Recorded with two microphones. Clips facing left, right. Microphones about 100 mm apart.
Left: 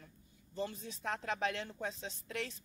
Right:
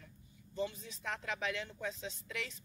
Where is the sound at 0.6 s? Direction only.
40° left (ahead or behind).